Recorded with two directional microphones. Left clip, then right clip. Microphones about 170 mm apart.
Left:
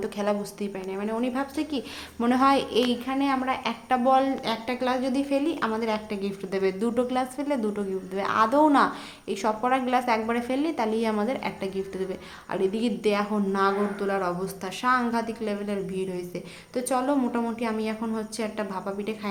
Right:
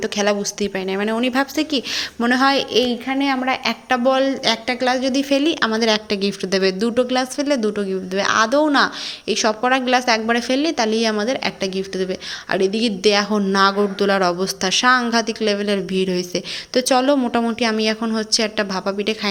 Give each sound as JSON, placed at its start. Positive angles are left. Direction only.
{"t": 0.0, "sound": "a woman's voice", "side_deg": -15}
{"t": 0.9, "sound": "a woman's voice", "side_deg": -30}
{"t": 3.1, "sound": "a woman's voice", "side_deg": -25}
{"t": 5.3, "sound": "a woman's voice", "side_deg": -30}